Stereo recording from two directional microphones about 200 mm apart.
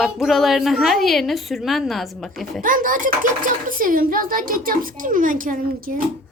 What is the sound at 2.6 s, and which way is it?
A child's voice, 45° right (ahead or behind).